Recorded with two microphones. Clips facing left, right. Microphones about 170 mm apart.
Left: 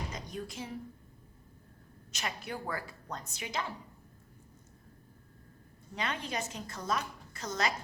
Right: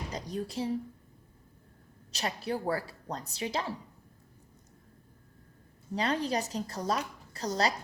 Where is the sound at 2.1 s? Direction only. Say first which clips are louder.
Right 6 dB; 35° right (ahead or behind).